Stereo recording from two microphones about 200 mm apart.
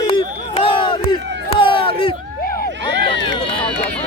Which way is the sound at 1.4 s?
25° left (ahead or behind).